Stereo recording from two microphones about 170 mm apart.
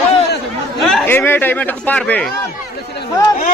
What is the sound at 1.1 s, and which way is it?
A man's voice, 10° left (ahead or behind).